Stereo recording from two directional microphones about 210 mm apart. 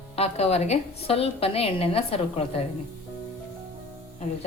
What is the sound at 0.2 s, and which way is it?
A woman's voice, 30° left (ahead or behind).